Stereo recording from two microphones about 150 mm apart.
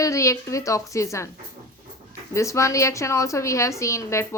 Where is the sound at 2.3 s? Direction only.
20° left (ahead or behind).